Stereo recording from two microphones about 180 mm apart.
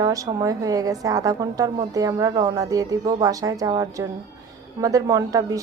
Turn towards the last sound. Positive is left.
turn(degrees=-20)  # may be behind; listen again after turning